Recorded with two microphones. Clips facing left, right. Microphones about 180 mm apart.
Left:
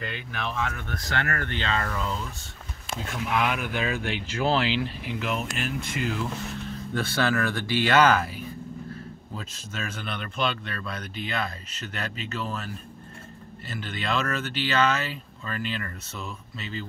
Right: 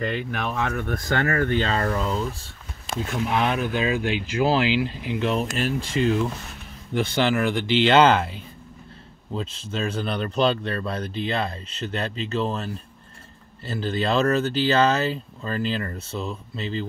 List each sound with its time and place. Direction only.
0.0 s speech: 45° right (ahead or behind)
1.6 s speech: 40° right (ahead or behind); by 5.3 s 20° right (ahead or behind)
5.3 s speech: 35° right (ahead or behind)
6.9 s speech: 15° right (ahead or behind); by 16.8 s 30° right (ahead or behind)